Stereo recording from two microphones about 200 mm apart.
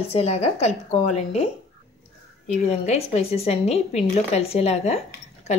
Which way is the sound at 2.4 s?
35° left (ahead or behind).